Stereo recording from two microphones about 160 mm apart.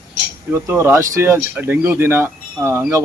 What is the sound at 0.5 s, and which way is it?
Speech, 15° right (ahead or behind).